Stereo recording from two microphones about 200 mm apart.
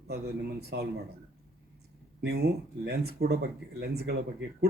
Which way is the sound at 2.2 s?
55° right (ahead or behind).